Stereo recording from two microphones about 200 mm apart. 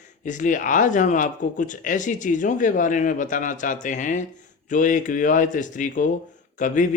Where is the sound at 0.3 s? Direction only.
40° left (ahead or behind).